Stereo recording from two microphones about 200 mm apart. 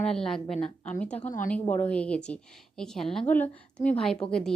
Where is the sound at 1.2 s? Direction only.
40° left (ahead or behind).